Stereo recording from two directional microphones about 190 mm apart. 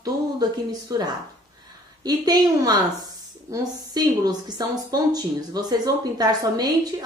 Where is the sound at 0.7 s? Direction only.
20° right (ahead or behind).